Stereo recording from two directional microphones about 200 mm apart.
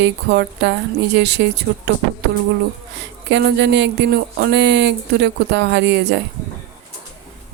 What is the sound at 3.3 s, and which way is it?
Speech, 60° right (ahead or behind).